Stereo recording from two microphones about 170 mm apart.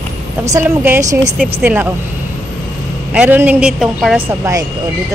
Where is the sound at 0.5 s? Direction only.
15° right (ahead or behind).